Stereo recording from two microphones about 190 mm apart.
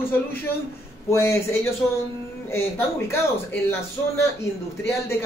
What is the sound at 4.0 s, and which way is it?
Speech, 15° left (ahead or behind).